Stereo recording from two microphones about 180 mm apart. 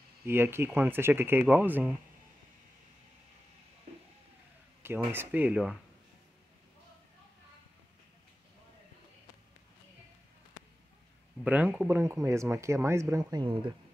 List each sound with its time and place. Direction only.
0.2 s speech: 15° right (ahead or behind)
4.8 s speech: 10° right (ahead or behind)
11.4 s speech: 10° right (ahead or behind); by 13.7 s 25° right (ahead or behind)